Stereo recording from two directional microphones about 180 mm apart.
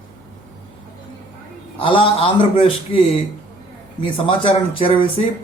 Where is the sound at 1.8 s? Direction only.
30° left (ahead or behind).